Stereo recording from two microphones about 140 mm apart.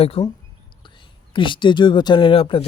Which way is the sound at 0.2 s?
40° left (ahead or behind).